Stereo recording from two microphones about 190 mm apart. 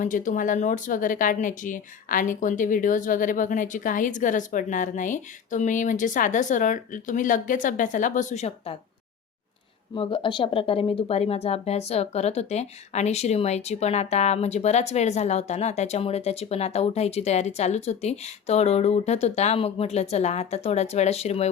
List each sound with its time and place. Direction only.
0.0 s speech: 40° left (ahead or behind)
9.9 s speech: 25° left (ahead or behind)